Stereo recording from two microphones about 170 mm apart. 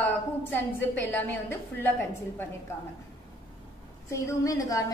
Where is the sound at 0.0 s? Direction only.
10° left (ahead or behind).